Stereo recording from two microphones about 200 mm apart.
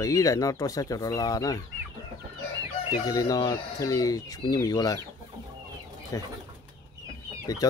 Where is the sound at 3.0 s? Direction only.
20° left (ahead or behind).